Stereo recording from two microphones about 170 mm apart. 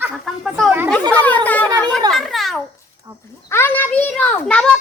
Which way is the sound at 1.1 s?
10° left (ahead or behind).